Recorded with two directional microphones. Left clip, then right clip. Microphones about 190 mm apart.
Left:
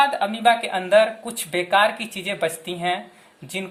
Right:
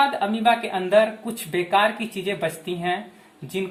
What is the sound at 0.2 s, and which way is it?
Speech, 50° left (ahead or behind).